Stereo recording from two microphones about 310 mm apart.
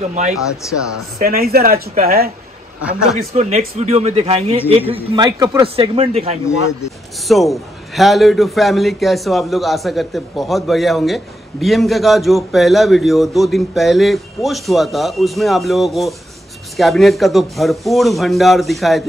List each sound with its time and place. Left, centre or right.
1.1 s a man's voice: right
2.8 s a man's voice: centre
3.2 s a man's voice: right
7.2 s a man's voice: centre